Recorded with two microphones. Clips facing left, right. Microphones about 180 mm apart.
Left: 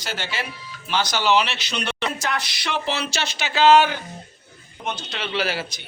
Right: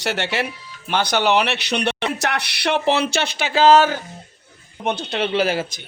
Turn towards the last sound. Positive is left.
turn(degrees=-50)  # may be behind; listen again after turning